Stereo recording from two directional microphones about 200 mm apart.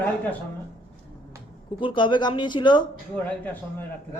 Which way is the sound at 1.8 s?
25° left (ahead or behind).